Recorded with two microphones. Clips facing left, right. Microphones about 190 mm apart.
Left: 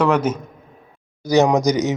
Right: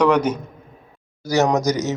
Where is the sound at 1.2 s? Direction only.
15° left (ahead or behind).